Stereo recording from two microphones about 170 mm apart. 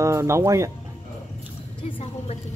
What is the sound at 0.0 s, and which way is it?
Speech, 15° right (ahead or behind).